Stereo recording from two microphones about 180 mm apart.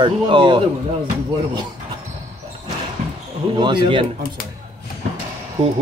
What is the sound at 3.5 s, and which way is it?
Speech, 25° right (ahead or behind).